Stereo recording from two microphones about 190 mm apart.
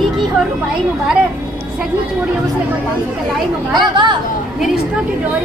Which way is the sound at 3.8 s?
25° right (ahead or behind).